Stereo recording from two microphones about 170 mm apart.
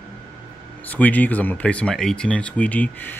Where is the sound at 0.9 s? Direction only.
10° left (ahead or behind).